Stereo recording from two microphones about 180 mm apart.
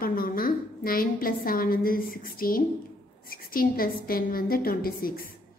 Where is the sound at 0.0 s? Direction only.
50° left (ahead or behind).